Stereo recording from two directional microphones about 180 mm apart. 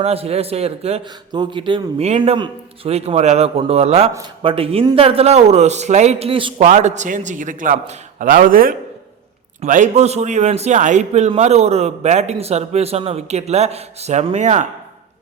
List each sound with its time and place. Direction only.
0.0 s a man's voice: 35° right (ahead or behind)
6.7 s a man's voice: 40° right (ahead or behind)